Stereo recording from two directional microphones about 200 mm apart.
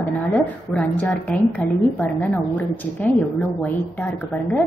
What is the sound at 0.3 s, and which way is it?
A woman's voice, 10° left (ahead or behind).